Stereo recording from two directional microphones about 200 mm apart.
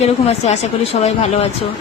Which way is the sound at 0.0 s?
35° left (ahead or behind).